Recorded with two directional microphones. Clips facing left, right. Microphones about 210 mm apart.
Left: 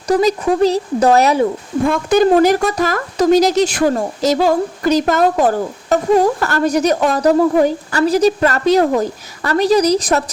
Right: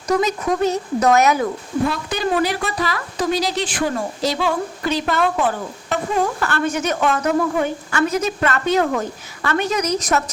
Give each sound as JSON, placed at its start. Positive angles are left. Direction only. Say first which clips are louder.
{"t": 0.1, "sound": "speech", "louder": "left 5 dB", "side_deg": 35}
{"t": 1.9, "sound": "speech", "louder": "left 10 dB", "side_deg": 45}